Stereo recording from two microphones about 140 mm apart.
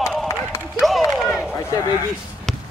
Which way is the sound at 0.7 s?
Centre (ahead or behind).